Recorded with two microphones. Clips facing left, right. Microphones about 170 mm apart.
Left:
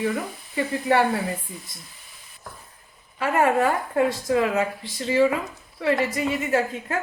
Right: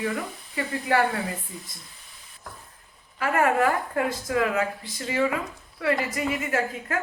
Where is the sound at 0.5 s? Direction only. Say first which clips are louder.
Left 3 dB; 25° left (ahead or behind).